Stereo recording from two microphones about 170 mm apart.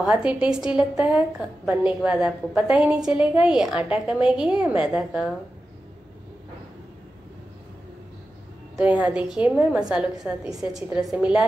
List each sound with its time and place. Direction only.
0.0 s a woman's voice: 5° right (ahead or behind)
8.7 s a woman's voice: 10° right (ahead or behind)
10.2 s a woman's voice: 15° right (ahead or behind)
10.6 s a woman's voice: 5° right (ahead or behind)